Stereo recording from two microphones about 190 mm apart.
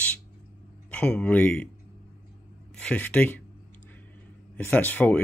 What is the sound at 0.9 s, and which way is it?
Speech, 5° left (ahead or behind).